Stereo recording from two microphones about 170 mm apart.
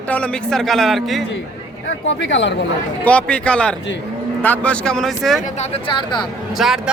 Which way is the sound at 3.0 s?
5° left (ahead or behind).